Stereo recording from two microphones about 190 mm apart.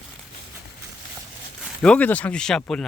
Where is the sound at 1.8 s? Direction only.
5° left (ahead or behind).